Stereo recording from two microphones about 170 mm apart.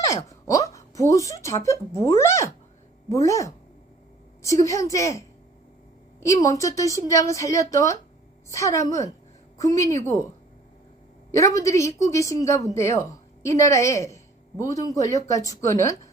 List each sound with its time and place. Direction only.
0.1 s a woman's voice: 20° left (ahead or behind)
6.2 s a woman's voice: 20° left (ahead or behind)
11.3 s a woman's voice: 20° left (ahead or behind)